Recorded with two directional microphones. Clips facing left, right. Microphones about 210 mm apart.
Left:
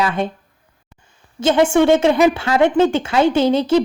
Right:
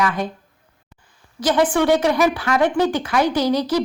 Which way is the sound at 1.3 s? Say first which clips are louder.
Left 4 dB; 25° left (ahead or behind).